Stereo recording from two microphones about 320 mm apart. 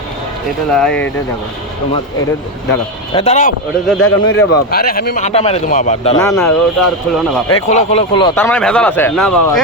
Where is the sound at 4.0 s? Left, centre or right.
Left.